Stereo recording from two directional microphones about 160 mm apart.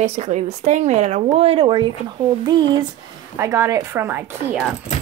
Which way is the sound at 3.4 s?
20° right (ahead or behind).